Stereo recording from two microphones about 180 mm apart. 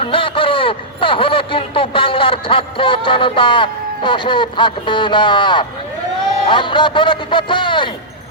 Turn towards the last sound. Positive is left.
turn(degrees=25)  # may be behind; listen again after turning